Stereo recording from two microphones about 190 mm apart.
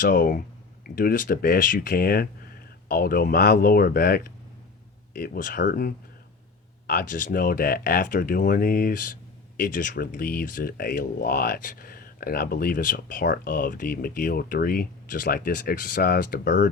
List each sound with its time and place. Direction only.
0.0 s speech: 45° left (ahead or behind)